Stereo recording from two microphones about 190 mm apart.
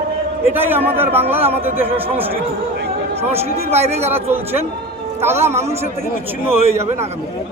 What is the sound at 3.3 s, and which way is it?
Speech, 35° right (ahead or behind).